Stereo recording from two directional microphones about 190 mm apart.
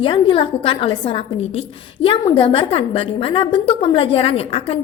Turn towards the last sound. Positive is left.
turn(degrees=30)  # may be behind; listen again after turning